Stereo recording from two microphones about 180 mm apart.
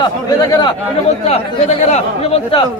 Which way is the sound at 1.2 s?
35° left (ahead or behind).